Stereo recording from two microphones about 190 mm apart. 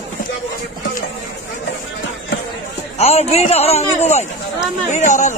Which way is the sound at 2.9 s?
35° left (ahead or behind).